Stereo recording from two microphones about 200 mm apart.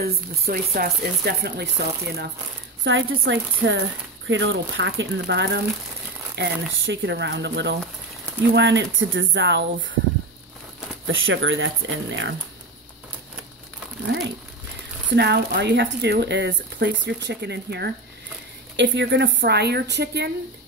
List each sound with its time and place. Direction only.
0.0 s speech: 50° right (ahead or behind)
2.8 s speech: 70° right (ahead or behind)
11.1 s speech: 75° right (ahead or behind)
15.1 s speech: 55° right (ahead or behind)